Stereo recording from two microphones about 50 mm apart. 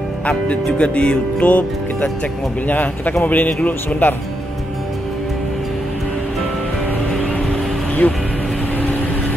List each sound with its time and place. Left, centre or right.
0.7 s speech: left
4.0 s speech: left
8.0 s speech: left